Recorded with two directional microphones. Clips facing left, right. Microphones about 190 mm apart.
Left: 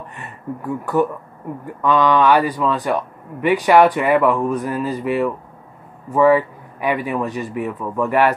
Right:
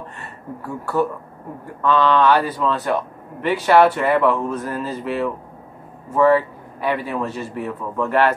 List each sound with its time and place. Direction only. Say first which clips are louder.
0.2 s speech: left 8 dB; 20° left (ahead or behind)